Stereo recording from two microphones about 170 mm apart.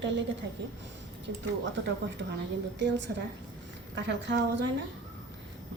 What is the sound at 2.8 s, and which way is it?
A woman's voice, 90° right.